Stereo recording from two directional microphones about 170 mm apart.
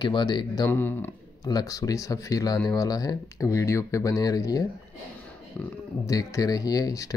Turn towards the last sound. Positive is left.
turn(degrees=20)  # may be behind; listen again after turning